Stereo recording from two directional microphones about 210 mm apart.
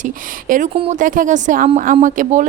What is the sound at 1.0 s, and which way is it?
A woman's voice, 40° right (ahead or behind).